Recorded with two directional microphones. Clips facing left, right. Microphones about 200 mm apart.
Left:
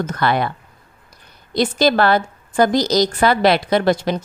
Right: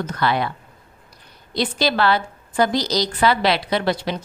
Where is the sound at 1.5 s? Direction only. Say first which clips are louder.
Left 5 dB; 45° left (ahead or behind).